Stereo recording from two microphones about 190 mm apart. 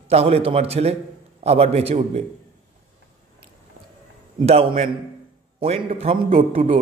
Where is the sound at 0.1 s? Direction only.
30° right (ahead or behind).